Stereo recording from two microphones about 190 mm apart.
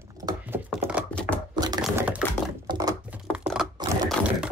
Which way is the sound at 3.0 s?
5° right (ahead or behind).